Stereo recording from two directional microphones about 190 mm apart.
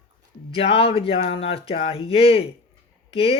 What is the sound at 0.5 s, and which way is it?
Speech, 30° left (ahead or behind).